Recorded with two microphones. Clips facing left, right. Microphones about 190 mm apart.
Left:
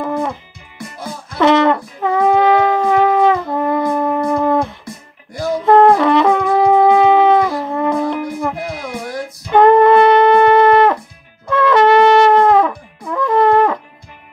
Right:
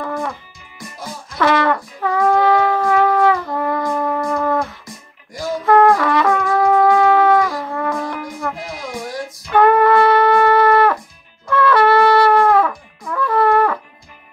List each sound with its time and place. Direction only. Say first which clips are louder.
0.0 s music: left 4 dB; 20° left (ahead or behind)
1.4 s shofar: left 4 dB; 20° left (ahead or behind)
5.7 s brass instrument: left 3 dB; 25° left (ahead or behind)
9.5 s wind instrument: left 4 dB; 25° left (ahead or behind)
11.4 s shofar: left 2 dB; 20° left (ahead or behind)
13.1 s wind instrument: left 3 dB; 20° left (ahead or behind)